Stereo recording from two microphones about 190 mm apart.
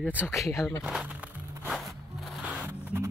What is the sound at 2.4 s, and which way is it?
Music, 5° right (ahead or behind).